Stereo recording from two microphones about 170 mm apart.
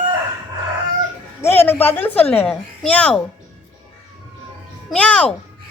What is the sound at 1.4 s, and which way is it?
A woman's voice, 15° left (ahead or behind).